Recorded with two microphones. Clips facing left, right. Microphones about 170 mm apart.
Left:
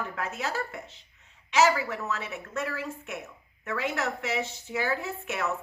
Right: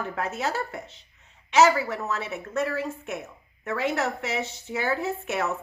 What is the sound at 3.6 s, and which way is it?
A woman's voice, 30° right (ahead or behind).